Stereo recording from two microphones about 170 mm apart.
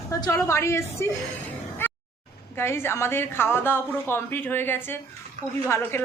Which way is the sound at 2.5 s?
15° left (ahead or behind).